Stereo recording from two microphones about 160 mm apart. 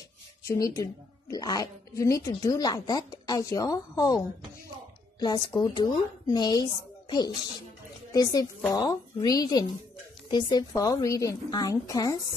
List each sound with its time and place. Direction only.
0.5 s a woman's voice: 20° left (ahead or behind)
5.2 s a woman's voice: 25° left (ahead or behind)